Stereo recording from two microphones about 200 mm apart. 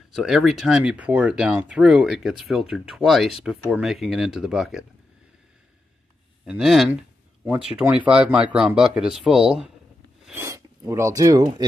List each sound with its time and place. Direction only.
0.1 s speech: centre (ahead or behind)
6.4 s speech: 5° right (ahead or behind)
10.2 s a sound: 15° right (ahead or behind)